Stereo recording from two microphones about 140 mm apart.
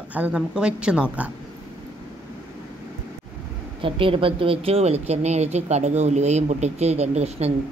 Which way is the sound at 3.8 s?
40° right (ahead or behind).